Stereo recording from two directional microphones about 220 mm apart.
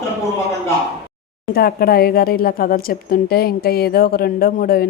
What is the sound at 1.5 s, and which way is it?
Speech, 45° left (ahead or behind).